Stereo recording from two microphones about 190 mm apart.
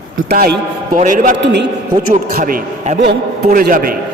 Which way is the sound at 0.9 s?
45° right (ahead or behind).